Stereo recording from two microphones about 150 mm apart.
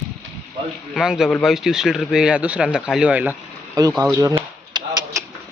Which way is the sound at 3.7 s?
25° right (ahead or behind).